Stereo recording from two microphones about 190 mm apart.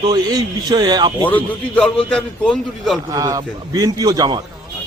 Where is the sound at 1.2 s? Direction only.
5° left (ahead or behind).